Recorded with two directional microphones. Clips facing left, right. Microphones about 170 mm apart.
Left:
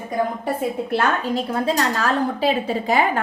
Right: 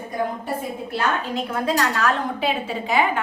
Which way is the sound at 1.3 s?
30° left (ahead or behind).